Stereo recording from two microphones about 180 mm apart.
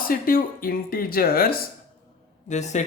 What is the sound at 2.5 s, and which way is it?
Speech, 40° left (ahead or behind).